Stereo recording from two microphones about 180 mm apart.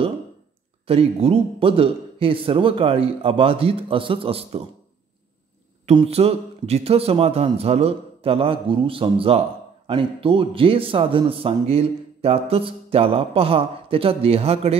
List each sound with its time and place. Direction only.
0.8 s a man's voice: 35° right (ahead or behind)
5.9 s a man's voice: 35° right (ahead or behind)